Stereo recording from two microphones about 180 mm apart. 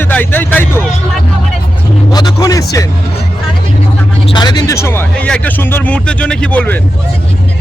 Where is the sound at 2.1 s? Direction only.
20° left (ahead or behind).